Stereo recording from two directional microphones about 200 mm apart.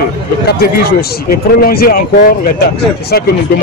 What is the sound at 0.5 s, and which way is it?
Speech, 50° left (ahead or behind).